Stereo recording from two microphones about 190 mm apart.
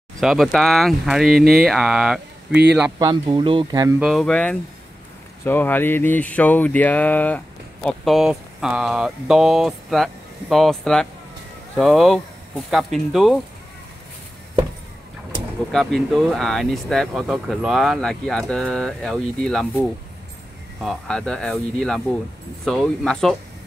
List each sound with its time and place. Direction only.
0.2 s speech: centre (ahead or behind)
2.7 s speech: 15° right (ahead or behind)
3.1 s speech: 25° right (ahead or behind)
4.0 s speech: centre (ahead or behind)
15.7 s speech: centre (ahead or behind)
20.8 s speech: centre (ahead or behind)